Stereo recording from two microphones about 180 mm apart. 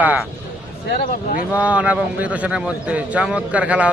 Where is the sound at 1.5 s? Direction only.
10° right (ahead or behind).